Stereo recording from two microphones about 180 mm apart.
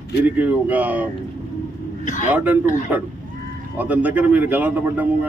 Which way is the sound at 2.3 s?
10° right (ahead or behind).